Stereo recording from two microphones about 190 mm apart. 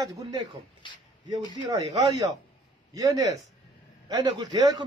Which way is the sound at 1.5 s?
20° right (ahead or behind).